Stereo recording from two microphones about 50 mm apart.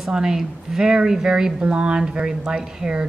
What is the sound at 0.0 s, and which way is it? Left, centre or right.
Speech, centre.